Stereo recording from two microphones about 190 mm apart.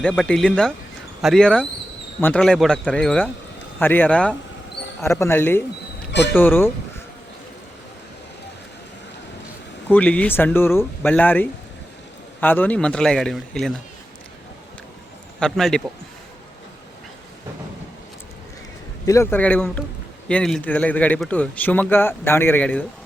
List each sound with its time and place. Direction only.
0.0 s a man's voice: 5° left (ahead or behind)
6.1 s a sound: 65° left (ahead or behind)
6.3 s a man's voice: 10° left (ahead or behind)
9.9 s a man's voice: 5° left (ahead or behind)
15.4 s speech: centre (ahead or behind)
19.0 s a man's voice: 15° left (ahead or behind)